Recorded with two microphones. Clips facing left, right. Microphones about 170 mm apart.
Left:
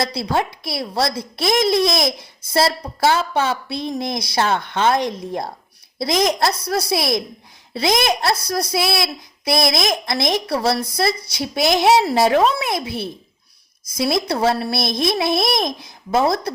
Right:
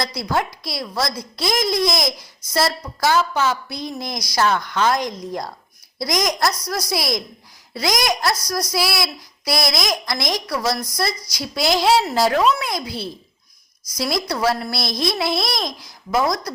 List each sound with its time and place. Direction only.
0.0 s speech: 30° left (ahead or behind)